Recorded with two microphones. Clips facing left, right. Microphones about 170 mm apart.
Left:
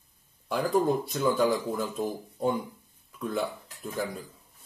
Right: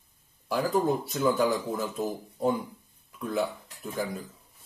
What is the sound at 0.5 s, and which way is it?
Speech, 5° right (ahead or behind).